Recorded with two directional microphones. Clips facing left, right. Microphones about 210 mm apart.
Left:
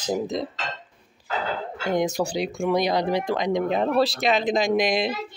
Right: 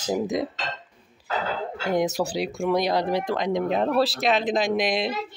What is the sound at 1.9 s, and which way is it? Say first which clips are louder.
Speech: even; 5° right (ahead or behind).